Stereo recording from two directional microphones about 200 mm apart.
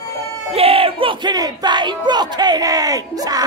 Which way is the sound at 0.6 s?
30° right (ahead or behind).